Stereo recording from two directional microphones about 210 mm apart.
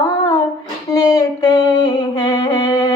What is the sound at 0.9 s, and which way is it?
Music, 15° left (ahead or behind).